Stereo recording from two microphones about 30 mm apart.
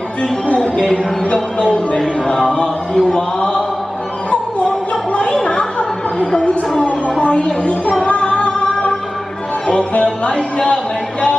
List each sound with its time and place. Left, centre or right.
0.9 s speech: left
2.0 s a sound: centre
2.9 s chant: centre
3.3 s a sound: left
5.3 s chatter: left
6.8 s music: left
9.7 s speech: left